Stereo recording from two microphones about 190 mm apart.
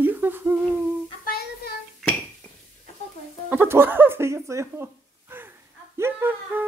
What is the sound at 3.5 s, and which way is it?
Speech, 10° right (ahead or behind).